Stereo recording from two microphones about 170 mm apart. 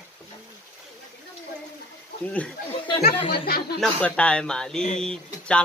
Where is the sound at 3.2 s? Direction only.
35° left (ahead or behind).